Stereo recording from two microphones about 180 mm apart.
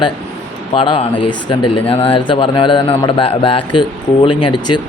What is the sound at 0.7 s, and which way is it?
Speech, 30° left (ahead or behind).